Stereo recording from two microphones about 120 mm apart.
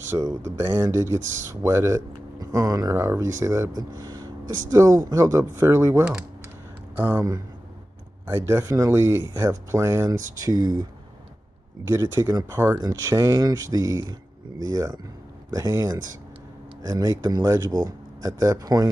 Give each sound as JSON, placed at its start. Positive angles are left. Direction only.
{"t": 0.1, "sound": "speech", "side_deg": -25}
{"t": 11.9, "sound": "speech", "side_deg": -25}